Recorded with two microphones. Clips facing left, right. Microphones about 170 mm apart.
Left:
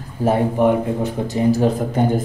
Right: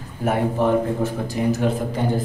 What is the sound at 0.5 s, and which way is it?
Speech, 15° left (ahead or behind).